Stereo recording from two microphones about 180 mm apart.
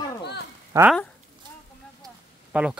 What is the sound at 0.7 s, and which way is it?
Speech, 10° right (ahead or behind).